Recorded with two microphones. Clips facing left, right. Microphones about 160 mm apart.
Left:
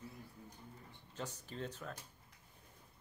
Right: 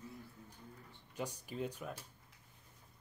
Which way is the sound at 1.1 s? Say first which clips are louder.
Right 3 dB; 10° right (ahead or behind).